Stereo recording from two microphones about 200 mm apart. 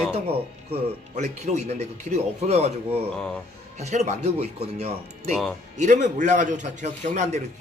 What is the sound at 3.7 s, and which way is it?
A man's voice, 35° right (ahead or behind).